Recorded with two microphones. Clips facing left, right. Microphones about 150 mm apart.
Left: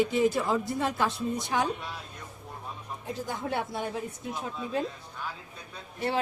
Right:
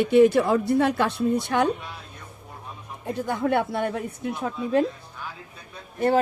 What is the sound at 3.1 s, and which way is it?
A woman's voice, 60° right (ahead or behind).